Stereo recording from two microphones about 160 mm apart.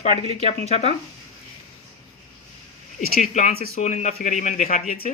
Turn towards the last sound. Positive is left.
turn(degrees=50)  # may be behind; listen again after turning